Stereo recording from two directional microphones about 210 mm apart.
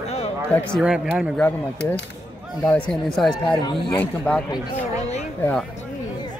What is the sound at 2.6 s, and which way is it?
Speech, 5° left (ahead or behind).